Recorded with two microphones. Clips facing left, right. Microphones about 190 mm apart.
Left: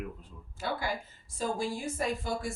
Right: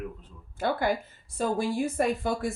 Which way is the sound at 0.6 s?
55° right (ahead or behind).